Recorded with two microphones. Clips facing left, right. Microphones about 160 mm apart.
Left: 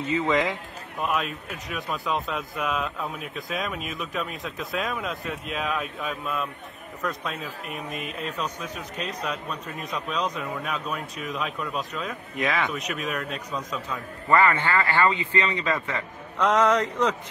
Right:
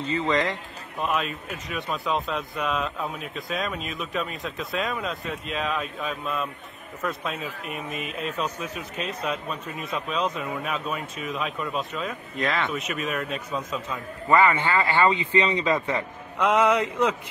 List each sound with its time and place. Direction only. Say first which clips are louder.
0.2 s speech: right 1 dB; 5° left (ahead or behind)
14.3 s speech: right 1 dB; 15° right (ahead or behind)
16.3 s a sound: even; 10° right (ahead or behind)